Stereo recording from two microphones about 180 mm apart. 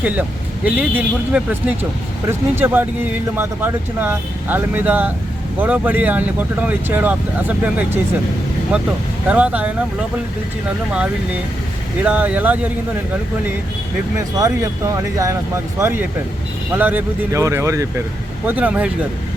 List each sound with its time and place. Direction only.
0.0 s speech: 10° right (ahead or behind)
9.2 s speech: 5° right (ahead or behind)
12.0 s speech: 10° right (ahead or behind)
14.3 s speech: 20° right (ahead or behind)